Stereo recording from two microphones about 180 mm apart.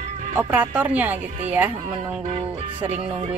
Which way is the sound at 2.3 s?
35° right (ahead or behind).